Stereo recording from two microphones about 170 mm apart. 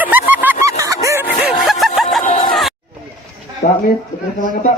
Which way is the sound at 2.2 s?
40° left (ahead or behind).